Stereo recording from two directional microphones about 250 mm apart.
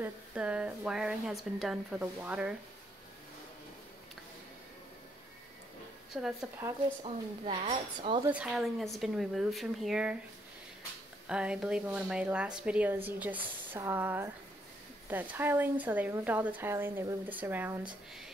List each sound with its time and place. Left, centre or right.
0.0 s speech: centre
6.1 s speech: centre
7.0 s speech: right
8.3 s speech: centre
11.2 s speech: centre